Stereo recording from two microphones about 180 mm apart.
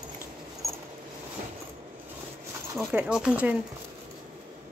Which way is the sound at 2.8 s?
5° right (ahead or behind).